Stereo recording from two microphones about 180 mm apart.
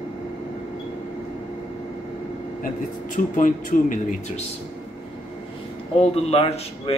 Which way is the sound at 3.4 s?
45° left (ahead or behind).